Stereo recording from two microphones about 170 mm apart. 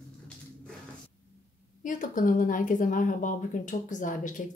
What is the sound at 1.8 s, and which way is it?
Speech, 50° left (ahead or behind).